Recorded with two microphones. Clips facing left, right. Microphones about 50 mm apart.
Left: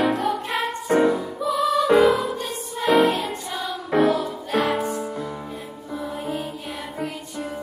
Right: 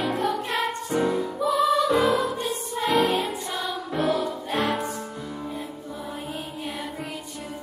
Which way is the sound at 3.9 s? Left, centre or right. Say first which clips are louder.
Left 6 dB; centre.